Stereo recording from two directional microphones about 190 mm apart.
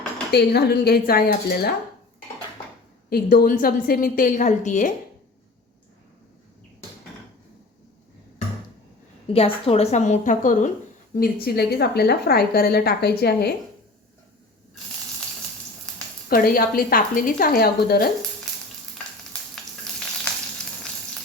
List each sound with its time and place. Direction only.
0.3 s a woman's voice: 60° left (ahead or behind)
3.1 s a woman's voice: 50° left (ahead or behind)
9.3 s a woman's voice: 30° left (ahead or behind); by 13.5 s 60° left (ahead or behind)
16.3 s a woman's voice: 50° left (ahead or behind)